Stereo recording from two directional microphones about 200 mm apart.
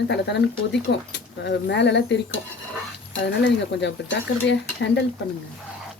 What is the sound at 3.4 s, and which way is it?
A woman's voice, 60° left (ahead or behind).